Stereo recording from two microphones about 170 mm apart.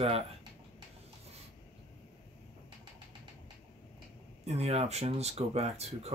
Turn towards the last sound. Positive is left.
turn(degrees=-40)  # may be behind; listen again after turning